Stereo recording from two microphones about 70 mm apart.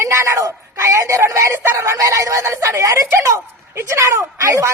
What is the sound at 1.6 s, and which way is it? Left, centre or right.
A woman's voice, right.